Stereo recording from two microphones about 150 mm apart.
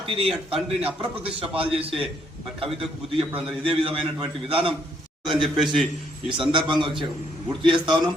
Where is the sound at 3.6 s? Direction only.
35° right (ahead or behind).